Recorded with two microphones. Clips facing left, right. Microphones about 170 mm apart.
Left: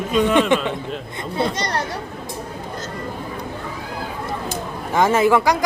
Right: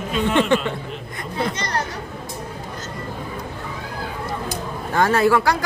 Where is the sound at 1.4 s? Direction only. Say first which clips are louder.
Left 3 dB; 35° left (ahead or behind).